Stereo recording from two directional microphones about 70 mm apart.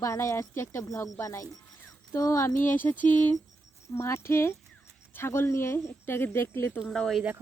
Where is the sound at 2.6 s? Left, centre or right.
Left.